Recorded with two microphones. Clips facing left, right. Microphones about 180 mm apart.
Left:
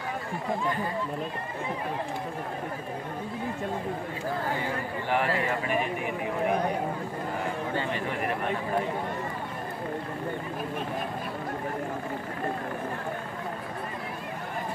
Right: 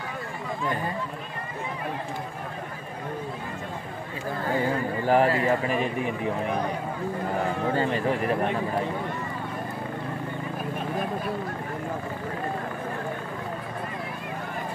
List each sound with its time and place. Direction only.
5.0 s speech: 35° right (ahead or behind)
7.7 s speech: 40° right (ahead or behind)